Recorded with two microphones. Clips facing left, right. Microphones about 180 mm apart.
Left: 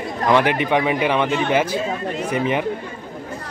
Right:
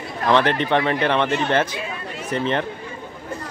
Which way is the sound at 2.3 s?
10° left (ahead or behind).